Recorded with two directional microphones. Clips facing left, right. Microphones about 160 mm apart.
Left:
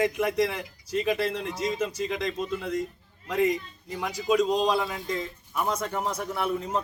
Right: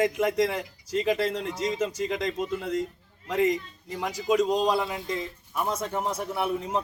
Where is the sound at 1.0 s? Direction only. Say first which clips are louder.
Right 1 dB; 35° right (ahead or behind).